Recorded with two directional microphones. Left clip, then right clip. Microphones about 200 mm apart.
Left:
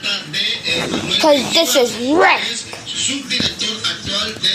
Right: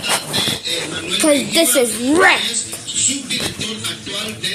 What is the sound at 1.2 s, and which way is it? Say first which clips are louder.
A woman's voice: left 1 dB; 40° right (ahead or behind).